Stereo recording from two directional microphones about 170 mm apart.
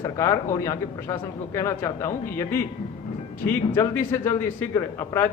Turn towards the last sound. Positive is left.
turn(degrees=15)  # may be behind; listen again after turning